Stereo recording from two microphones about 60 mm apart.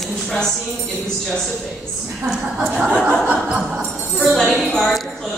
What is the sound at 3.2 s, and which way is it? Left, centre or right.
Music, centre.